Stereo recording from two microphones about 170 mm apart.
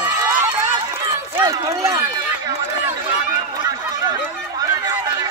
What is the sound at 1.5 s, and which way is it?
Speech, 20° right (ahead or behind).